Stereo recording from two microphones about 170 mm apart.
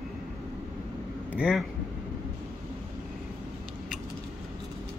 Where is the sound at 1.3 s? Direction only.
5° right (ahead or behind).